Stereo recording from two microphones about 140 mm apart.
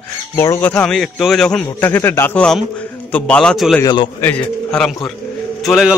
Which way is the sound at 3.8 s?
30° left (ahead or behind).